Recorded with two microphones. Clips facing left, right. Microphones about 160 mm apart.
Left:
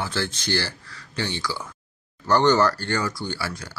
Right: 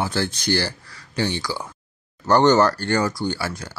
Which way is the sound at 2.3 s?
45° right (ahead or behind).